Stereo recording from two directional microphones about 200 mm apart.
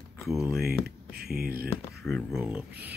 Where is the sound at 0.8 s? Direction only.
50° right (ahead or behind).